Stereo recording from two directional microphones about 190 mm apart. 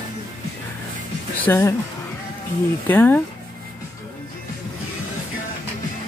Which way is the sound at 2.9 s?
10° left (ahead or behind).